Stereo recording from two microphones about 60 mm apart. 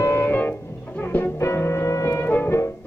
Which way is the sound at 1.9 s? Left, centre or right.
Left.